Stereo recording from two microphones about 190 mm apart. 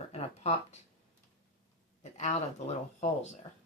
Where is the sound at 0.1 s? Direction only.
35° left (ahead or behind).